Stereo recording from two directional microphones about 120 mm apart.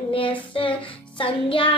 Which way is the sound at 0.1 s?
45° left (ahead or behind).